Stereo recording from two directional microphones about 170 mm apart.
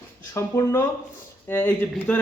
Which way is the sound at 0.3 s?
15° left (ahead or behind).